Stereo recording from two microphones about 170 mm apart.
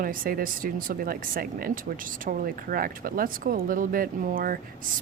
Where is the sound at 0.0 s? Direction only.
55° right (ahead or behind).